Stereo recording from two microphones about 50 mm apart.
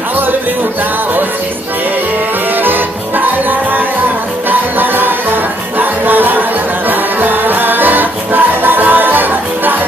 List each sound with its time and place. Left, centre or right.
2.6 s music: right